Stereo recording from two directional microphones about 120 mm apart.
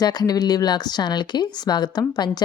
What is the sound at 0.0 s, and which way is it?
A woman's voice, 35° left (ahead or behind).